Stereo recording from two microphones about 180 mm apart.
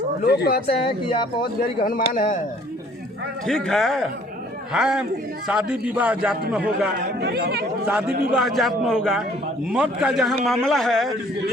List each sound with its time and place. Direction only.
0.3 s speech: 65° left (ahead or behind)
1.8 s speech: 50° left (ahead or behind)
3.4 s a man's voice: centre (ahead or behind)
7.2 s speech: 65° right (ahead or behind)
7.9 s a man's voice: 5° right (ahead or behind)